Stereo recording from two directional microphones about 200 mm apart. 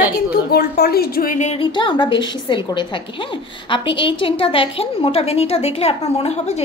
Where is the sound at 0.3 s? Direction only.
50° left (ahead or behind).